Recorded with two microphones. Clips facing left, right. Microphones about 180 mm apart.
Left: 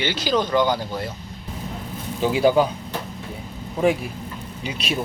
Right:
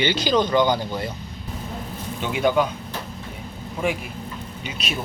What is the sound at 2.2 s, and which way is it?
Speech, 30° left (ahead or behind).